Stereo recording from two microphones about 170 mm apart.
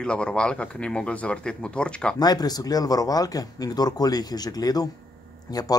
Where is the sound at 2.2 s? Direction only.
25° left (ahead or behind).